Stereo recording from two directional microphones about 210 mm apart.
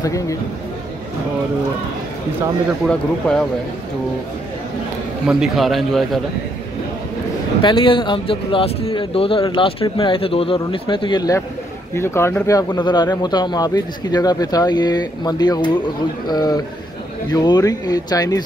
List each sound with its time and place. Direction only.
0.0 s speech: 15° left (ahead or behind)
2.9 s a man's voice: 5° left (ahead or behind)
5.2 s a man's voice: 5° right (ahead or behind)
7.6 s speech: 25° left (ahead or behind)